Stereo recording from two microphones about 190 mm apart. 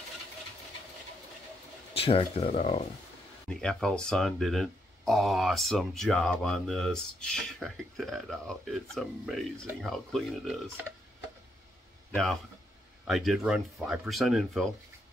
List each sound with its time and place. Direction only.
2.0 s speech: 30° left (ahead or behind)
3.4 s speech: 5° left (ahead or behind)
12.1 s speech: 5° left (ahead or behind)